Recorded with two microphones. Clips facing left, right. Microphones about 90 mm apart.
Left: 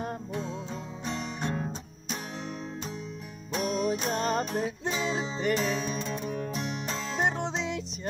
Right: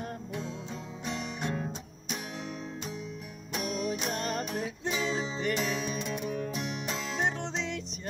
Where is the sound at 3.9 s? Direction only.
20° left (ahead or behind).